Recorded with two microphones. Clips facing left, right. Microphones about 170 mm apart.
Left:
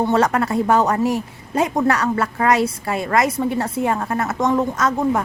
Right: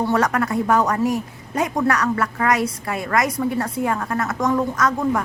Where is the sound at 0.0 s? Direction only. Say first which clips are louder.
Left 2 dB; 25° left (ahead or behind).